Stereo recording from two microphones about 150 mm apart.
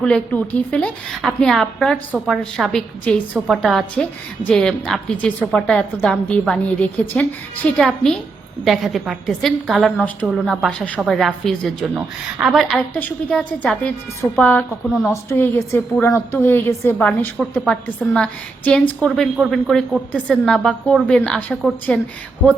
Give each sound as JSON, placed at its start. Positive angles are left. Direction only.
{"t": 0.0, "sound": "a woman's voice", "side_deg": 10}
{"t": 15.1, "sound": "a woman's voice", "side_deg": 15}